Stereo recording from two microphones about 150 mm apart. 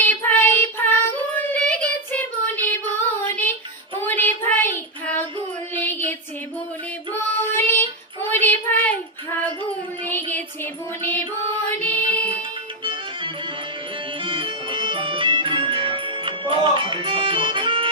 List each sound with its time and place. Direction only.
0.0 s child singing: 10° left (ahead or behind)
5.7 s music: 10° left (ahead or behind)
7.5 s child singing: 15° left (ahead or behind)
11.0 s music: 10° left (ahead or behind)
14.3 s music: 35° right (ahead or behind)